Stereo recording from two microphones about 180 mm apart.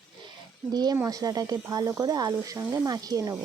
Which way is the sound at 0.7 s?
20° right (ahead or behind).